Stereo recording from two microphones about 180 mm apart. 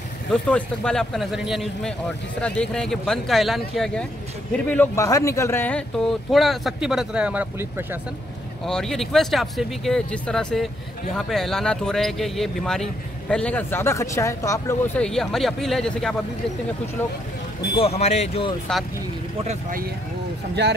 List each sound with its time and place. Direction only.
0.3 s speech: 5° left (ahead or behind); by 8.0 s 10° right (ahead or behind)
8.6 s speech: 5° left (ahead or behind)
15.0 s speech: 5° left (ahead or behind)
17.7 s speech: 35° left (ahead or behind)
18.7 s speech: 5° left (ahead or behind)
19.4 s speech: 40° right (ahead or behind)